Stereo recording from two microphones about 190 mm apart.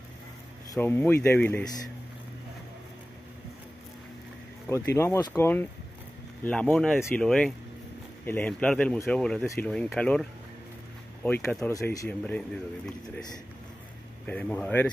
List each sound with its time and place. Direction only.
0.7 s speech: 10° left (ahead or behind)
4.6 s speech: 15° left (ahead or behind)
11.2 s speech: 10° left (ahead or behind)
14.2 s speech: 5° left (ahead or behind)